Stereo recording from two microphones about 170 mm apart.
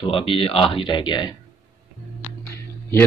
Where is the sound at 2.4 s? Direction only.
15° left (ahead or behind).